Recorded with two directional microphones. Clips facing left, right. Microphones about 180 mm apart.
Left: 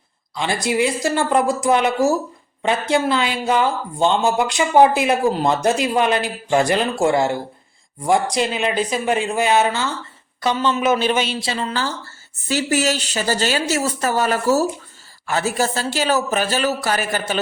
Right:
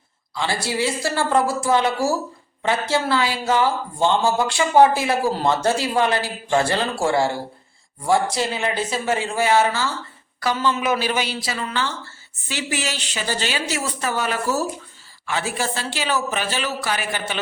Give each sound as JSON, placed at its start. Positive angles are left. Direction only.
{"t": 0.3, "sound": "a woman's voice", "side_deg": 20}